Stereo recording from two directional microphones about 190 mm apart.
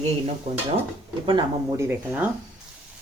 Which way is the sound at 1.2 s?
20° right (ahead or behind).